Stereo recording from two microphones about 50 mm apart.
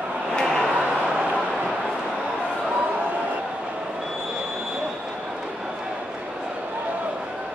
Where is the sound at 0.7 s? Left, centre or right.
Right.